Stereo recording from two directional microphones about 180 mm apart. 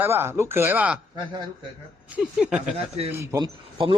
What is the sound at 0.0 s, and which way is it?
Speech, 15° right (ahead or behind).